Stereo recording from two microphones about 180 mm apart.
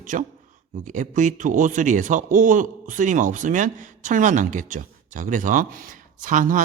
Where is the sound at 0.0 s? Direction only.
45° right (ahead or behind).